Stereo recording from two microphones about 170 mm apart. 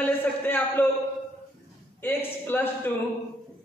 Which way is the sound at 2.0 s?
10° left (ahead or behind).